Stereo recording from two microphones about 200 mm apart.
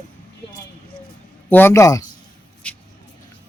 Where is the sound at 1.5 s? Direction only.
10° left (ahead or behind).